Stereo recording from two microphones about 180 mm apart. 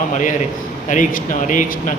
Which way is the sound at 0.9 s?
45° left (ahead or behind).